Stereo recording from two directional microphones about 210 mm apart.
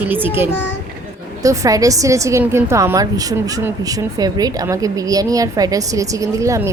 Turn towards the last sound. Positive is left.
turn(degrees=-15)  # may be behind; listen again after turning